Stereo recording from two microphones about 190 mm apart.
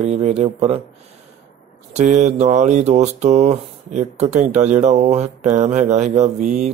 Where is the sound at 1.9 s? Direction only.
40° right (ahead or behind).